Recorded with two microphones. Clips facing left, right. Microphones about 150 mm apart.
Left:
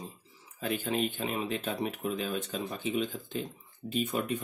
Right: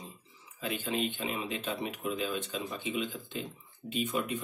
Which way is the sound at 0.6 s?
45° left (ahead or behind).